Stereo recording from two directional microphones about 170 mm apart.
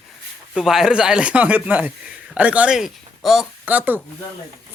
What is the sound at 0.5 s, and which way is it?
Speech, 5° right (ahead or behind).